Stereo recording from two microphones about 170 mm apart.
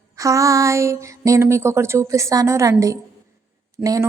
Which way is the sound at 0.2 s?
20° right (ahead or behind).